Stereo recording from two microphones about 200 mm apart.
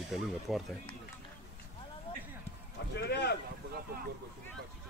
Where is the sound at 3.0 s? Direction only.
55° left (ahead or behind).